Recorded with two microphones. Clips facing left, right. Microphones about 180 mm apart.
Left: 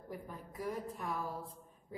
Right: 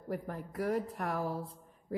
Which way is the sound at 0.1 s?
70° right (ahead or behind).